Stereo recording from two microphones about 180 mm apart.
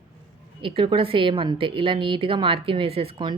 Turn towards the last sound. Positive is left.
turn(degrees=-25)  # may be behind; listen again after turning